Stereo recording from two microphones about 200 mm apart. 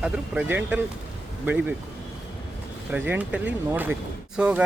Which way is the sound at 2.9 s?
5° right (ahead or behind).